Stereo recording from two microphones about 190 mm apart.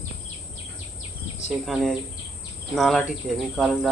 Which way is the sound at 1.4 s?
Centre (ahead or behind).